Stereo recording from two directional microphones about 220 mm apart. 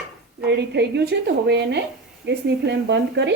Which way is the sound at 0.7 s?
50° right (ahead or behind).